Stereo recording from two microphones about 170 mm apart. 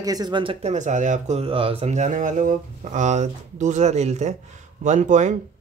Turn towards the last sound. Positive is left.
turn(degrees=-45)  # may be behind; listen again after turning